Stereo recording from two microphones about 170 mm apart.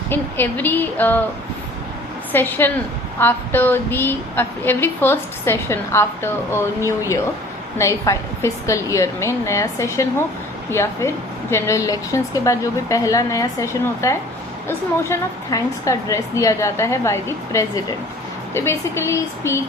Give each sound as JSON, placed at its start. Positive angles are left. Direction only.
{"t": 0.1, "sound": "a woman's voice", "side_deg": 10}
{"t": 2.3, "sound": "a woman's voice", "side_deg": 10}